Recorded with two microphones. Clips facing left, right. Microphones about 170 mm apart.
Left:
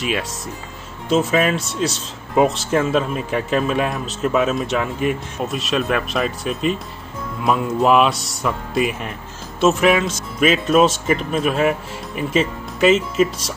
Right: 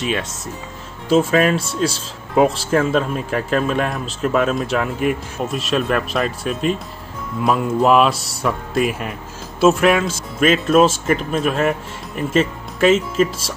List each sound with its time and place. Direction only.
1.0 s speech: centre (ahead or behind)